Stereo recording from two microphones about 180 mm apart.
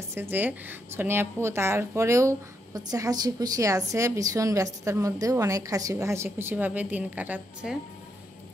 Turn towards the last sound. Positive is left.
turn(degrees=-5)  # may be behind; listen again after turning